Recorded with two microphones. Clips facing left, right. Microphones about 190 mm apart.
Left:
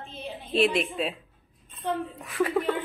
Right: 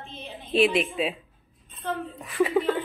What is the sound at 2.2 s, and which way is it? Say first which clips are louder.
Speech: right 5 dB; centre (ahead or behind).